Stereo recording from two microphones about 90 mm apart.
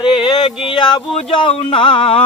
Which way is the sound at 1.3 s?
80° left.